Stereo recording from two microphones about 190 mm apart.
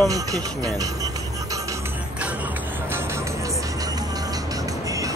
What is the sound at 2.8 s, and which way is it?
Music, 10° right (ahead or behind).